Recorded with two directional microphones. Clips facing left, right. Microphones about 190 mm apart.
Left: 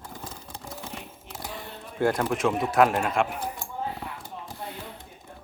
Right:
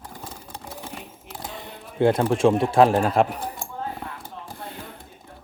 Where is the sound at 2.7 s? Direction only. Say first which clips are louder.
Right 5 dB; 30° right (ahead or behind).